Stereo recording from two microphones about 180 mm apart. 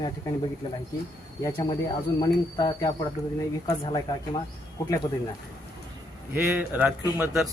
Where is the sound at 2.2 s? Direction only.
20° left (ahead or behind).